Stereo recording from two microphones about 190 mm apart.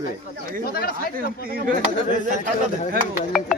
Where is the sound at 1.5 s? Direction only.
50° right (ahead or behind).